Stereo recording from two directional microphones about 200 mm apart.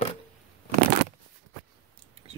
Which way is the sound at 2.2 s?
30° right (ahead or behind).